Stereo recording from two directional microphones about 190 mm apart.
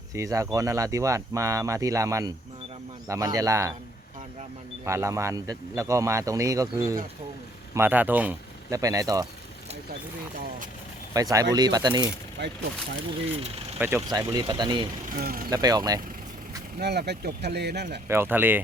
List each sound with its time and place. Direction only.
0.1 s speech: 15° right (ahead or behind)
4.9 s speech: 15° right (ahead or behind)
11.1 s speech: 20° right (ahead or behind)
12.4 s speech: 65° right (ahead or behind)
13.7 s speech: 10° right (ahead or behind)
15.1 s speech: 50° right (ahead or behind)
15.4 s speech: 20° right (ahead or behind)
16.7 s speech: 55° right (ahead or behind)
18.1 s speech: 10° right (ahead or behind)